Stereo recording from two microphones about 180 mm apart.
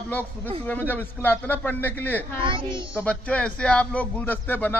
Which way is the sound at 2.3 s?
30° right (ahead or behind).